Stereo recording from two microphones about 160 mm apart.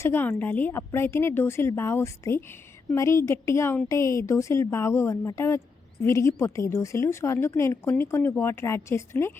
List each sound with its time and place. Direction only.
0.0 s a woman's voice: 15° left (ahead or behind)